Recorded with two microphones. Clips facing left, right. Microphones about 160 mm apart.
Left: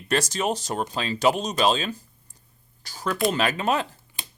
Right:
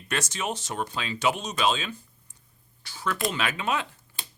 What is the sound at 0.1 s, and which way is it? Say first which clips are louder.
Speech: left 6 dB; 35° left (ahead or behind).